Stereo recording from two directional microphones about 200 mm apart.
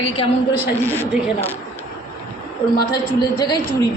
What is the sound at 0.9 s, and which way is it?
Speech, 10° left (ahead or behind).